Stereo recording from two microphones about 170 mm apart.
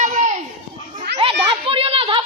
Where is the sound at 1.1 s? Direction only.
35° right (ahead or behind).